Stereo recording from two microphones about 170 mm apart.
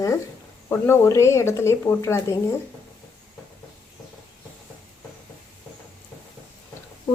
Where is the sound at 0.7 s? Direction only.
15° left (ahead or behind).